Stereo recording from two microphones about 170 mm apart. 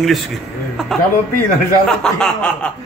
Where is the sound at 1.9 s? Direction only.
5° left (ahead or behind).